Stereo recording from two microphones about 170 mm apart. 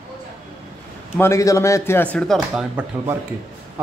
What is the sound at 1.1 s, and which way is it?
Speech, 15° left (ahead or behind).